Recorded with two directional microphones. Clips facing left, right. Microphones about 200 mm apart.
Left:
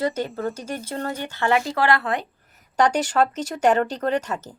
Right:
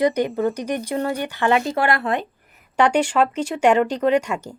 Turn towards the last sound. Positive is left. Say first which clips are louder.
# right 5 dB
turn(degrees=-10)  # may be behind; listen again after turning